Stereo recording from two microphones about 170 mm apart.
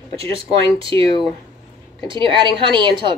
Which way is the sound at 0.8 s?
30° right (ahead or behind).